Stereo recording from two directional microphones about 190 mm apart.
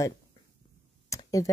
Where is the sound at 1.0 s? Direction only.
20° left (ahead or behind).